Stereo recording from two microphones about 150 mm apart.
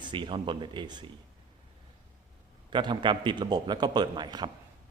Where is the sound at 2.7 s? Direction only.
30° right (ahead or behind).